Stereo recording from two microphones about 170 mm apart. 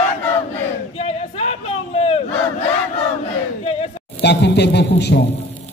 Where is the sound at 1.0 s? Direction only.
35° left (ahead or behind).